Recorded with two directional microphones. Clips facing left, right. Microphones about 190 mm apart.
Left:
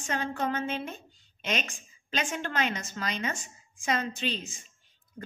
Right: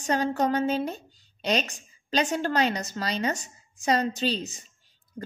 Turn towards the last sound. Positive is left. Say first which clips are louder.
# right 6 dB
turn(degrees=-35)  # may be behind; listen again after turning